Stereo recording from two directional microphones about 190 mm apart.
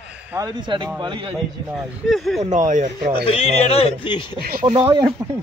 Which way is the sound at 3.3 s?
30° left (ahead or behind).